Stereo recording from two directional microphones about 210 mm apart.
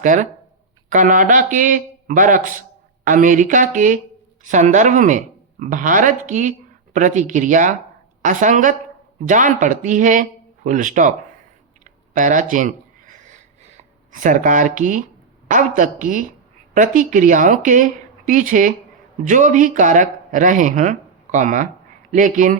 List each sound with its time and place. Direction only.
0.0 s speech: 35° right (ahead or behind)
12.1 s a sound: 35° right (ahead or behind)
15.4 s speech: 40° right (ahead or behind)